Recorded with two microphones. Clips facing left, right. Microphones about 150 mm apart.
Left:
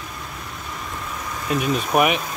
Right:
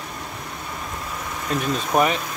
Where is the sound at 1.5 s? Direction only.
10° left (ahead or behind).